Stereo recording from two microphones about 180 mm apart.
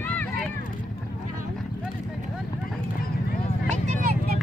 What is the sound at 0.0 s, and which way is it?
Run, 10° left (ahead or behind).